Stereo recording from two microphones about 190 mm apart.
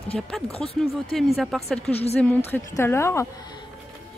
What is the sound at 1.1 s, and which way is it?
A woman's voice, centre (ahead or behind).